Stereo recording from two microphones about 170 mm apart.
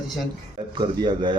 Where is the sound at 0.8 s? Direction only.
30° right (ahead or behind).